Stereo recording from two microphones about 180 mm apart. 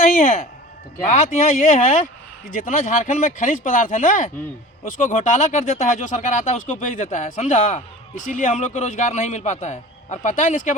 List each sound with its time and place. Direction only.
0.0 s speech: 45° left (ahead or behind)